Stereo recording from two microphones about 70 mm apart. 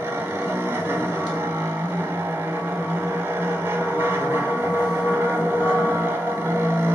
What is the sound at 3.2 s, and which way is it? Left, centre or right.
Vehicle, right.